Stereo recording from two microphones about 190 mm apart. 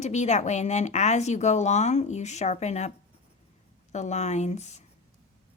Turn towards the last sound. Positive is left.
turn(degrees=35)  # may be behind; listen again after turning